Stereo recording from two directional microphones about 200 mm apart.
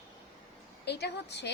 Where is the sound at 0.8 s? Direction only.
55° left (ahead or behind).